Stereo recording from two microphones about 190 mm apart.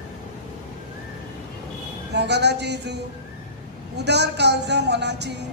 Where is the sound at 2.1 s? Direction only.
60° right (ahead or behind).